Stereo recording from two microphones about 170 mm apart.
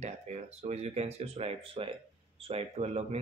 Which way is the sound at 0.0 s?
40° right (ahead or behind).